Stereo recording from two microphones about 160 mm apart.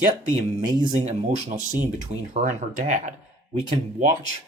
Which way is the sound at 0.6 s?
25° right (ahead or behind).